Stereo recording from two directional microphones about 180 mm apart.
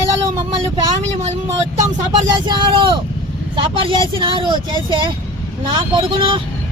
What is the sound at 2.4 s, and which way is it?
Speech, 25° right (ahead or behind).